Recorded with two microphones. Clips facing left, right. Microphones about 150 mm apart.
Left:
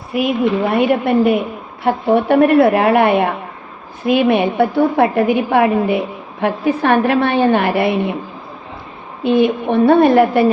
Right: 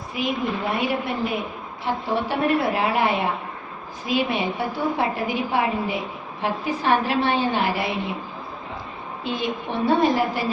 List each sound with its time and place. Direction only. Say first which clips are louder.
0.1 s a woman's voice: left 10 dB; 65° left (ahead or behind)
9.2 s a woman's voice: left 13 dB; 60° left (ahead or behind)